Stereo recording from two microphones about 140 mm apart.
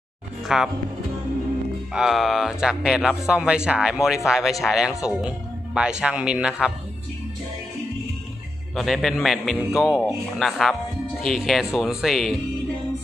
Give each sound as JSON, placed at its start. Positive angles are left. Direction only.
{"t": 0.5, "sound": "speech", "side_deg": -5}
{"t": 2.0, "sound": "speech", "side_deg": 0}
{"t": 8.7, "sound": "speech", "side_deg": 0}